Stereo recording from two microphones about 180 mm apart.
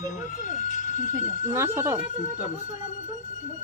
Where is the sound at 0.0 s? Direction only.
45° left (ahead or behind).